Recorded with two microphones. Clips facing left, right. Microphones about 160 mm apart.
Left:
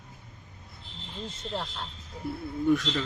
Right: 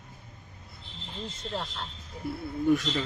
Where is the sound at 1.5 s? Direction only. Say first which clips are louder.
Even; centre (ahead or behind).